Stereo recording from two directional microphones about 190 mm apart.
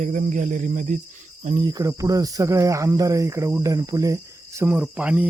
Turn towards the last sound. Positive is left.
turn(degrees=-5)  # may be behind; listen again after turning